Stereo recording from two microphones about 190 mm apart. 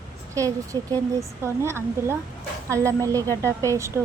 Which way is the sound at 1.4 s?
15° right (ahead or behind).